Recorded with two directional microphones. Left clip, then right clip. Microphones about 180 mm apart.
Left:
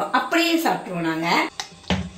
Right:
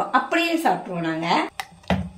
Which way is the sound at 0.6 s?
20° right (ahead or behind).